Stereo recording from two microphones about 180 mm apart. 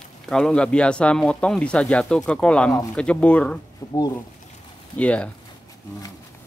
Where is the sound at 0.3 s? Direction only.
5° left (ahead or behind).